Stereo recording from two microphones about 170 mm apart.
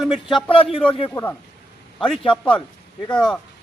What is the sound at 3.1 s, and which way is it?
Speech, 5° left (ahead or behind).